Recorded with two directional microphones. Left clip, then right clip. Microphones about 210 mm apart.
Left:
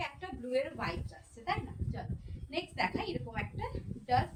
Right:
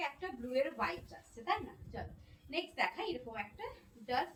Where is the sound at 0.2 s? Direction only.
20° left (ahead or behind).